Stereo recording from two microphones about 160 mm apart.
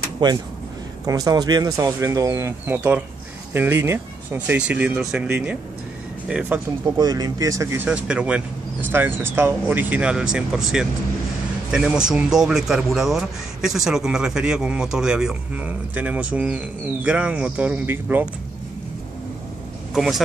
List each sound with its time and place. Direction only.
0.2 s speech: 25° right (ahead or behind); by 6.6 s 5° right (ahead or behind)
7.0 s speech: 25° right (ahead or behind)
19.9 s a man's voice: centre (ahead or behind)